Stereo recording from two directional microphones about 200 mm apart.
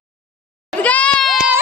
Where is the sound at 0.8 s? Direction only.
5° left (ahead or behind).